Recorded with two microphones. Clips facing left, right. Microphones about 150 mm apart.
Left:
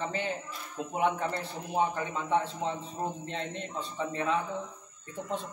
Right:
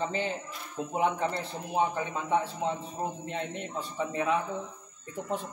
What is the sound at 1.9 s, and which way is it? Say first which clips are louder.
Speech: right 1 dB; 15° right (ahead or behind).